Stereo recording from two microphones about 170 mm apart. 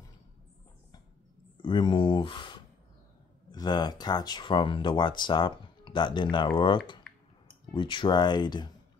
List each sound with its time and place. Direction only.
1.6 s speech: 25° left (ahead or behind)